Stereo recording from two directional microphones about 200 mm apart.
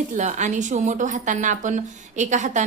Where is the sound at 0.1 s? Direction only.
40° right (ahead or behind).